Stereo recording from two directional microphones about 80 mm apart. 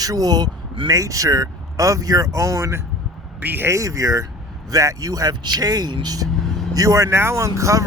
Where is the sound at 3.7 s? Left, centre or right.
Right.